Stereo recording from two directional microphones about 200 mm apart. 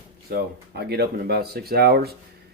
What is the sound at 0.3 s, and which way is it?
Speech, 50° right (ahead or behind).